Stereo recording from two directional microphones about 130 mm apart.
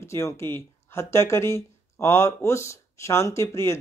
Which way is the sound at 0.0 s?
20° left (ahead or behind).